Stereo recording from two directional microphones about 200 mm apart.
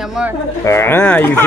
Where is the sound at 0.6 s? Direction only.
10° left (ahead or behind).